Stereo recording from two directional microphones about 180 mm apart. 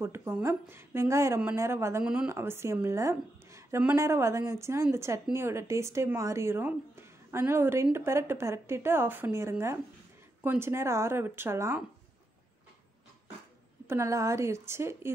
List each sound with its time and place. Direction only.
0.0 s a woman's voice: 15° right (ahead or behind)
13.8 s a woman's voice: 15° right (ahead or behind)